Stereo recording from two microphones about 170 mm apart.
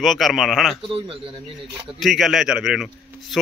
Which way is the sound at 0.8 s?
30° right (ahead or behind).